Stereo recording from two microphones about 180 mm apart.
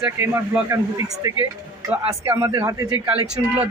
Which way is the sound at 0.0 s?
15° right (ahead or behind).